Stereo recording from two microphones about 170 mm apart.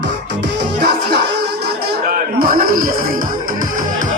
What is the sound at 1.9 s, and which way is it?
Music, 60° right (ahead or behind).